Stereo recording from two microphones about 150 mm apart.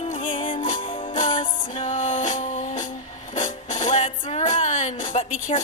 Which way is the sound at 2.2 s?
50° left (ahead or behind).